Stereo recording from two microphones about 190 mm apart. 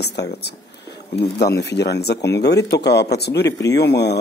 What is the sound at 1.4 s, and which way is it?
Speech, 60° left (ahead or behind).